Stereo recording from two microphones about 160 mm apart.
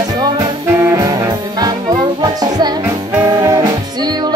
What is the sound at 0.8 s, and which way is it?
Brass instrument, 20° right (ahead or behind).